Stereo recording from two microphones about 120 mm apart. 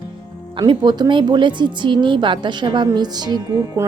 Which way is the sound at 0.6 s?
40° right (ahead or behind).